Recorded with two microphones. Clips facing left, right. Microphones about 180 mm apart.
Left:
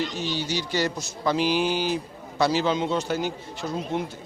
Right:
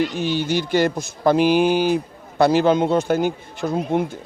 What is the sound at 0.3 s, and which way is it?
A man's voice, 55° right (ahead or behind).